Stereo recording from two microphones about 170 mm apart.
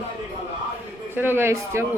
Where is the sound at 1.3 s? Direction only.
15° right (ahead or behind).